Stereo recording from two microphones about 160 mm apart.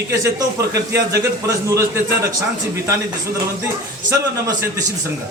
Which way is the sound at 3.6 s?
20° right (ahead or behind).